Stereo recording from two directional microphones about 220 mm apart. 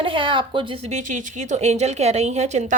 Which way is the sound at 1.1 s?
35° right (ahead or behind).